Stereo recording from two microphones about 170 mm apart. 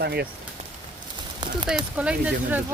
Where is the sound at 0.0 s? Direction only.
70° right (ahead or behind).